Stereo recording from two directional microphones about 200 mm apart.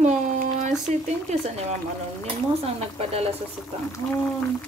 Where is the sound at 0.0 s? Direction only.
40° right (ahead or behind).